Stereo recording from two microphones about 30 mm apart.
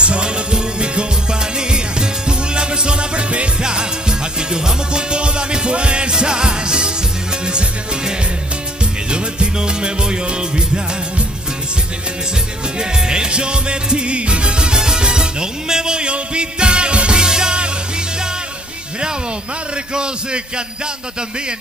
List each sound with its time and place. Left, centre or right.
0.0 s music: right
3.6 s music: right
12.7 s music: right
19.9 s music: right